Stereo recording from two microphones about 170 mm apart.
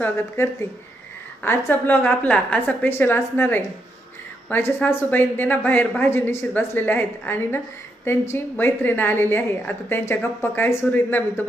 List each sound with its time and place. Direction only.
0.4 s a woman's voice: 15° left (ahead or behind)